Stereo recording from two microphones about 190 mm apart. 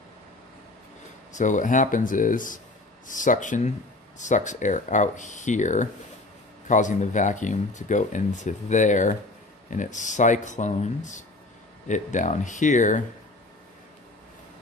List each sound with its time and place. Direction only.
1.3 s speech: 40° left (ahead or behind)